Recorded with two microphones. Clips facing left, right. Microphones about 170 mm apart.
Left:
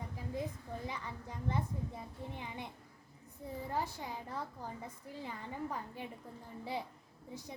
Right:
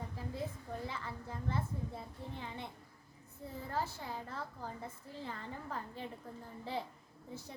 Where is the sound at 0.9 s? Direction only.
15° left (ahead or behind).